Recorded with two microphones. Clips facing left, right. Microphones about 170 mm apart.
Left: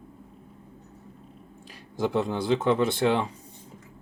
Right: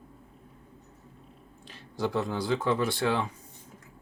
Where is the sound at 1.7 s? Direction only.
15° left (ahead or behind).